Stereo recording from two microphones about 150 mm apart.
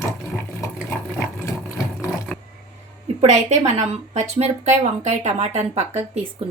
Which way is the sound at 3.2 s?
50° right (ahead or behind).